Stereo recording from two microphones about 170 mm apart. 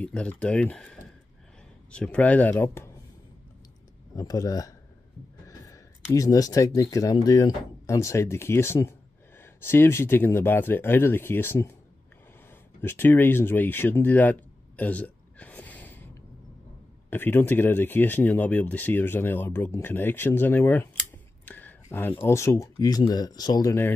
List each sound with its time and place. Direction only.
0.0 s speech: 5° left (ahead or behind)
4.2 s speech: 20° left (ahead or behind)
12.4 s a sound: 15° left (ahead or behind)
17.1 s speech: 10° left (ahead or behind)